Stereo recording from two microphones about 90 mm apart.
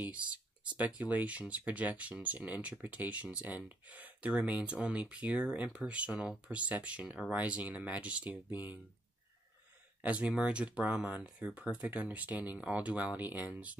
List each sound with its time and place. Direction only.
0.7 s speech: 15° right (ahead or behind)
10.0 s speech: 15° right (ahead or behind)